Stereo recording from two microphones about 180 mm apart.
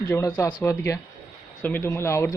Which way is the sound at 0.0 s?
15° left (ahead or behind).